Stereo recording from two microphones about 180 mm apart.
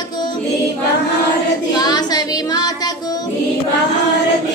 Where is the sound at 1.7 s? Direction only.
20° left (ahead or behind).